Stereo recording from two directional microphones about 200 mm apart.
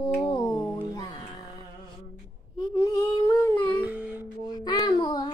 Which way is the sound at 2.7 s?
25° left (ahead or behind).